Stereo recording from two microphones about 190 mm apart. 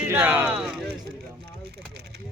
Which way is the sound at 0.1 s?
10° right (ahead or behind).